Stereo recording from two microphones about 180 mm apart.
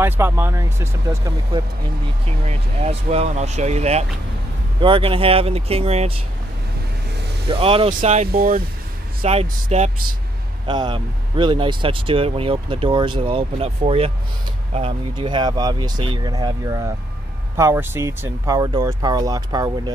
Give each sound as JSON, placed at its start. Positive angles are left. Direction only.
{"t": 0.0, "sound": "speech", "side_deg": -15}
{"t": 2.4, "sound": "speech", "side_deg": -35}
{"t": 7.4, "sound": "speech", "side_deg": -30}
{"t": 8.3, "sound": "speech", "side_deg": -55}
{"t": 9.2, "sound": "speech", "side_deg": -35}
{"t": 10.7, "sound": "speech", "side_deg": -25}